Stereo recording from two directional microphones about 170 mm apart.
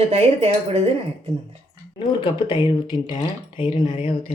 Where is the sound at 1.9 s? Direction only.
30° left (ahead or behind).